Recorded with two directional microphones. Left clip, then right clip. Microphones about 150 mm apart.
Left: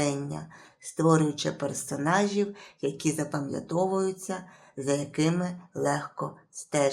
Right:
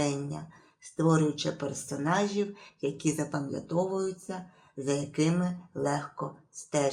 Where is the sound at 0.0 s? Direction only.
20° left (ahead or behind).